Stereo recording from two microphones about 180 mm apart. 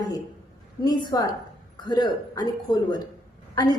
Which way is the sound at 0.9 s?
20° left (ahead or behind).